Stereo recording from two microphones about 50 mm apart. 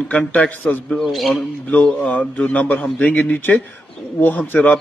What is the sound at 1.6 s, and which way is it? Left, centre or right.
A man's voice, left.